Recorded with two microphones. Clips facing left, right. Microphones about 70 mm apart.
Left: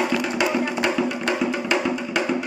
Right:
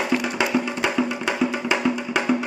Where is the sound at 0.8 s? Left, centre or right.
Centre.